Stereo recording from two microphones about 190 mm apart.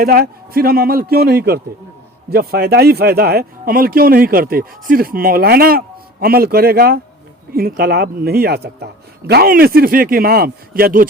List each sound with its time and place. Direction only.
0.0 s speech: 50° right (ahead or behind)